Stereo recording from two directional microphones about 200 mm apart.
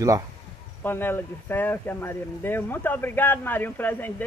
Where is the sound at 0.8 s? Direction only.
10° left (ahead or behind).